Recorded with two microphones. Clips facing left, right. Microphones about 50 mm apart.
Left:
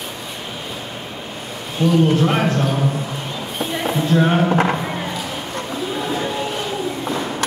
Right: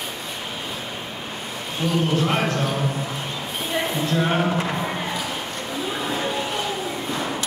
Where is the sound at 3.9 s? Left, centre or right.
Centre.